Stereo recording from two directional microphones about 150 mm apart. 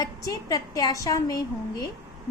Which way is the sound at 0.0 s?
25° left (ahead or behind).